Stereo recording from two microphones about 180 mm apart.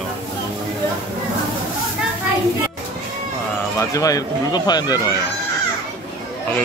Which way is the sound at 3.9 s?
20° left (ahead or behind).